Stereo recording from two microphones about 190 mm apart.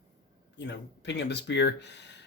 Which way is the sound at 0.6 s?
65° left (ahead or behind).